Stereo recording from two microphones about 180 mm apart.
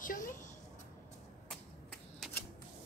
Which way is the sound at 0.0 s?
50° left (ahead or behind).